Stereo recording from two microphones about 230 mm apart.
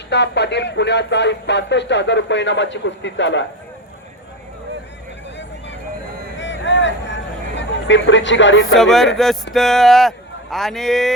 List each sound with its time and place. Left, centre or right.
0.1 s speech: left
6.3 s a sound: left
8.7 s speech: centre